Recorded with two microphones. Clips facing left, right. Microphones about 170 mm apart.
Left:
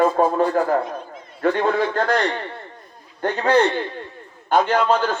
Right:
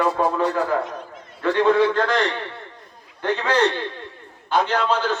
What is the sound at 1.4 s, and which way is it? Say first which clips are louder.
Speech: right 2 dB; 45° left (ahead or behind).